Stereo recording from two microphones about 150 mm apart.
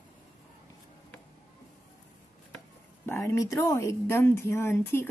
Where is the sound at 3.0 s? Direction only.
20° left (ahead or behind).